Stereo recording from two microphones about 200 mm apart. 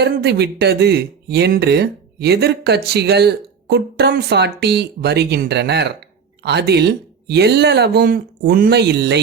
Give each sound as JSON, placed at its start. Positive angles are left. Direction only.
{"t": 0.0, "sound": "speech", "side_deg": -55}